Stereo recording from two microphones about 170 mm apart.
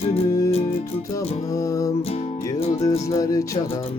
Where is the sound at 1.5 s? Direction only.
20° left (ahead or behind).